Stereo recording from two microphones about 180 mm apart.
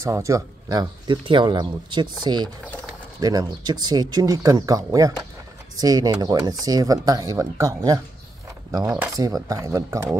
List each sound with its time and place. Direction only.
0.0 s speech: 15° right (ahead or behind)